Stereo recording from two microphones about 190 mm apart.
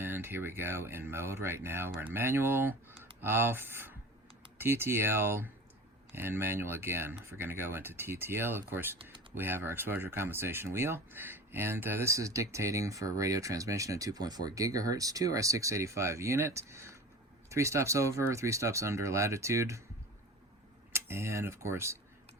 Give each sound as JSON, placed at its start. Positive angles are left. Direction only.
{"t": 0.0, "sound": "speech", "side_deg": -10}
{"t": 20.9, "sound": "speech", "side_deg": -15}